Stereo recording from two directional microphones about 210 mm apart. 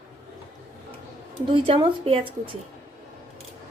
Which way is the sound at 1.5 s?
25° right (ahead or behind).